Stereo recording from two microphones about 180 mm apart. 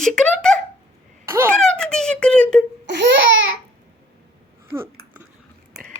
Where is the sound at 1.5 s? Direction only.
5° left (ahead or behind).